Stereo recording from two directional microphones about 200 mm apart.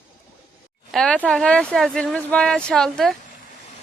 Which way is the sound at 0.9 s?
5° left (ahead or behind).